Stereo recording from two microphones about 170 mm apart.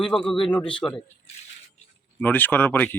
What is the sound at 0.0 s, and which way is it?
A man's voice, 5° left (ahead or behind).